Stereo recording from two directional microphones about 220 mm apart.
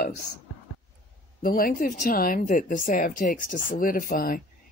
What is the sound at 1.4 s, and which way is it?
Speech, 40° left (ahead or behind).